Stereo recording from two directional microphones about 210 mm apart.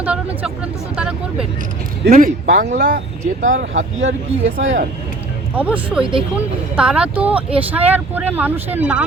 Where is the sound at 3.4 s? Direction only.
35° right (ahead or behind).